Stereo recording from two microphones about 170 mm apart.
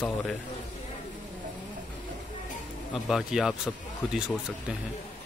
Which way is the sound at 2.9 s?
Centre (ahead or behind).